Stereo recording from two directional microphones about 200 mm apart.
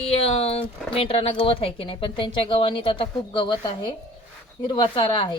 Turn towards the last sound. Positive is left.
turn(degrees=25)  # may be behind; listen again after turning